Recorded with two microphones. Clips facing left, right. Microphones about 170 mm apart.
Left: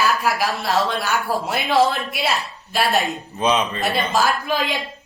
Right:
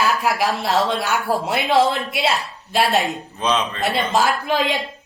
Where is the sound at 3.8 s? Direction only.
25° right (ahead or behind).